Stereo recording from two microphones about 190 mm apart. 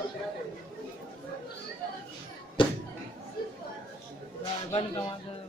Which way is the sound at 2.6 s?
25° left (ahead or behind).